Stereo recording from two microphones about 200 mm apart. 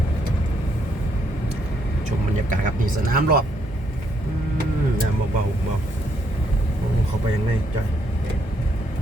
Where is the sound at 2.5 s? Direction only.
45° right (ahead or behind).